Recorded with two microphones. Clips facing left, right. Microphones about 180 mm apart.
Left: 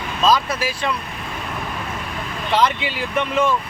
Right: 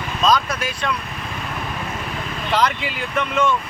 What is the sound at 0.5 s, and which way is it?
Speech, 30° left (ahead or behind).